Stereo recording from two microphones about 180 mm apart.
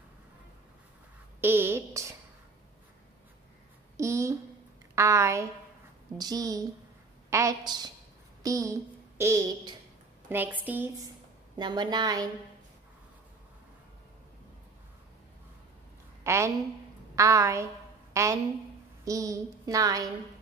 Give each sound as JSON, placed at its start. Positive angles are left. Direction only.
{"t": 1.4, "sound": "a woman's voice", "side_deg": -10}
{"t": 3.9, "sound": "a sound", "side_deg": -15}
{"t": 6.1, "sound": "a woman's voice", "side_deg": -20}
{"t": 11.5, "sound": "a woman's voice", "side_deg": -25}
{"t": 16.3, "sound": "a woman's voice", "side_deg": -15}